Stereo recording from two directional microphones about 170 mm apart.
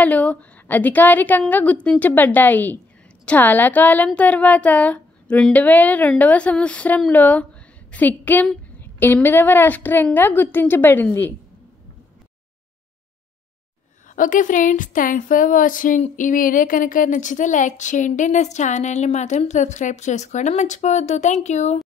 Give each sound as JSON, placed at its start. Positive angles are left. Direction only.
{"t": 0.0, "sound": "a woman's voice", "side_deg": 10}
{"t": 14.1, "sound": "a woman's voice", "side_deg": 50}